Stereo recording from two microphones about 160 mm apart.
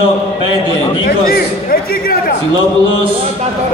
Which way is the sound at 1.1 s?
70° left (ahead or behind).